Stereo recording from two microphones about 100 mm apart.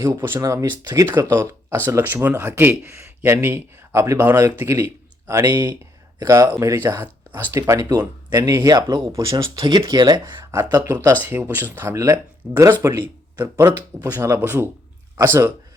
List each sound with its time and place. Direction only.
0.0 s speech: 30° right (ahead or behind)
5.5 s speech: 45° right (ahead or behind)
5.8 s speech: 35° right (ahead or behind)
6.8 s speech: 20° right (ahead or behind); by 9.6 s 35° right (ahead or behind)
9.6 s speech: 50° right (ahead or behind)
10.2 s speech: 25° right (ahead or behind)